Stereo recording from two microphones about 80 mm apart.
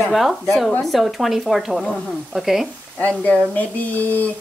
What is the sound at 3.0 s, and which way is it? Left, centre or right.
Speech, left.